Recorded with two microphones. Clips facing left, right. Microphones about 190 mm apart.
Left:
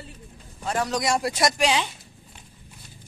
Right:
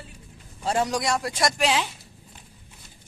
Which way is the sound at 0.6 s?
25° right (ahead or behind).